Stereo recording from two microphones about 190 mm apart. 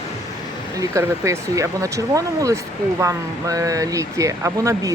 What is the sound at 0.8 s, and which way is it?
Speech, 15° right (ahead or behind).